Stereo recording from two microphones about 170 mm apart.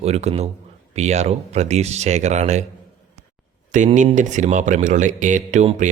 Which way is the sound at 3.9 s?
45° right (ahead or behind).